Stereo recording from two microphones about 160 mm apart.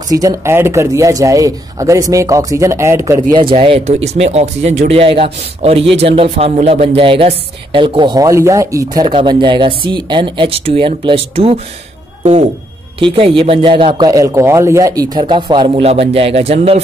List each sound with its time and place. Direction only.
0.1 s speech: 20° right (ahead or behind)
3.5 s speech: 40° right (ahead or behind)
13.0 s speech: 35° right (ahead or behind)
15.1 s speech: 30° right (ahead or behind)